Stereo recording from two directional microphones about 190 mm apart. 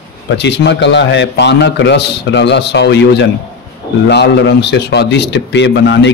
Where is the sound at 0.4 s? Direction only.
65° left (ahead or behind).